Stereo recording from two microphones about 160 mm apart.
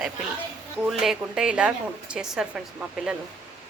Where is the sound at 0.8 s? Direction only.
5° right (ahead or behind).